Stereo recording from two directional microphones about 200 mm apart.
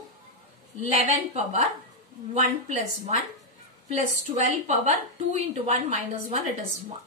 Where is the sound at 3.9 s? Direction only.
35° right (ahead or behind).